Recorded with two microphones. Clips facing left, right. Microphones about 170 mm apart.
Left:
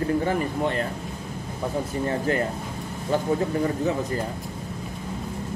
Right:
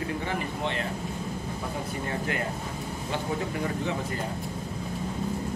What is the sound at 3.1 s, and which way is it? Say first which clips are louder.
Speech: left 8 dB; 40° left (ahead or behind).